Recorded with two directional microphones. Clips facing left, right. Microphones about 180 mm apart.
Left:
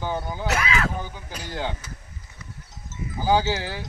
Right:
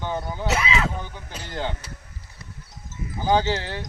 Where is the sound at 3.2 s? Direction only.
5° left (ahead or behind).